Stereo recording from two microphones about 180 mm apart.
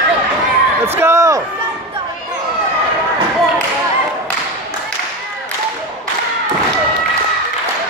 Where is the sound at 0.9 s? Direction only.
15° right (ahead or behind).